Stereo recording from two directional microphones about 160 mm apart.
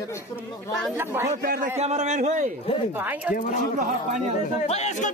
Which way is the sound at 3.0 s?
10° right (ahead or behind).